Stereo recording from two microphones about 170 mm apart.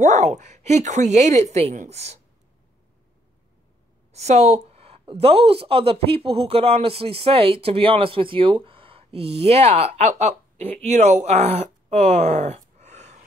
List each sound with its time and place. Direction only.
0.0 s a woman's voice: 45° right (ahead or behind)
4.1 s a woman's voice: 40° right (ahead or behind)